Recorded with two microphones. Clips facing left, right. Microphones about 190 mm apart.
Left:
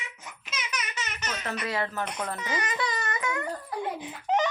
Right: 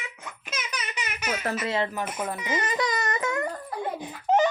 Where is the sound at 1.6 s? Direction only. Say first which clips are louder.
Right 2 dB; 20° right (ahead or behind).